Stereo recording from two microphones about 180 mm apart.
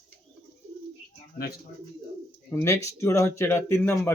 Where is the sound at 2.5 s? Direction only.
15° left (ahead or behind).